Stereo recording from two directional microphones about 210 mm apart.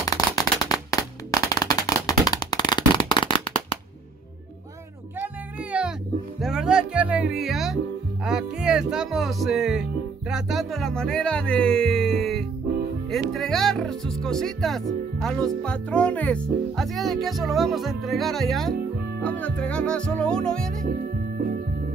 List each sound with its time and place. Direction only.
0.0 s firecracker: 15° left (ahead or behind)
5.2 s music: 5° right (ahead or behind)
8.3 s speech: 5° right (ahead or behind)
20.9 s music: 45° right (ahead or behind)